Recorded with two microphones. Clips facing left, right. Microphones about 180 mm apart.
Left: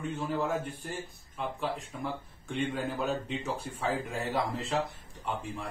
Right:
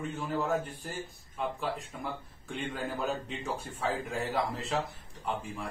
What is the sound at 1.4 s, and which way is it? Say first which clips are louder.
A man's voice: even; centre (ahead or behind).